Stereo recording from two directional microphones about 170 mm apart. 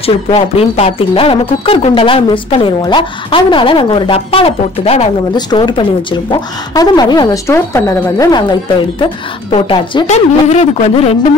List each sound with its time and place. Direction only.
0.0 s a woman's voice: 35° left (ahead or behind)